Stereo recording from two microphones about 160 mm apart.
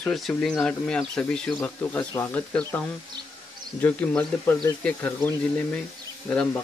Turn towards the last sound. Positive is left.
turn(degrees=5)  # may be behind; listen again after turning